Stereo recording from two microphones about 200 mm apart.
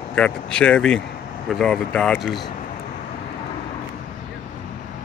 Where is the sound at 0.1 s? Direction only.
5° left (ahead or behind).